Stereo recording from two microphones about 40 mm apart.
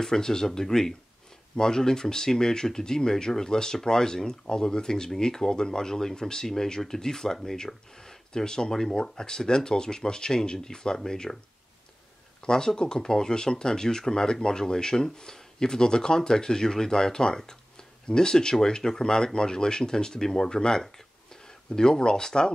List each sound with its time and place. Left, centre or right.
0.0 s speech: centre
12.4 s speech: centre